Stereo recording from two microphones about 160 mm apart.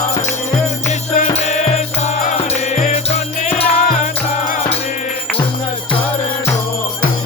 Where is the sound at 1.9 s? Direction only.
50° left (ahead or behind).